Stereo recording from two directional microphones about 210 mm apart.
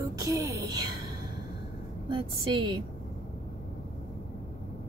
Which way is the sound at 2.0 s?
25° right (ahead or behind).